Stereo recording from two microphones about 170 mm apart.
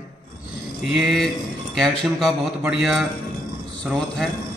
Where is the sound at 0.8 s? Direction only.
Centre (ahead or behind).